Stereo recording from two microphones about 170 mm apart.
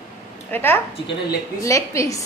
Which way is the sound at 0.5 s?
15° left (ahead or behind).